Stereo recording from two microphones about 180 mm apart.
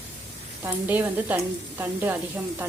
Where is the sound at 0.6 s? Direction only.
10° right (ahead or behind).